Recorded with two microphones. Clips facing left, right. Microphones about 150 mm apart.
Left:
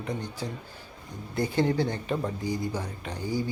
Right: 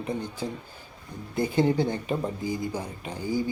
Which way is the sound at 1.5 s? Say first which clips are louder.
Right 2 dB; 15° right (ahead or behind).